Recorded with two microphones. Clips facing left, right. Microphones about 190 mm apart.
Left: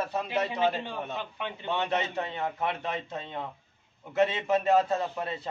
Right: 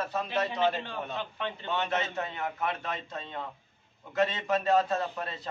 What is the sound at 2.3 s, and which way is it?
A man's voice, 25° left (ahead or behind).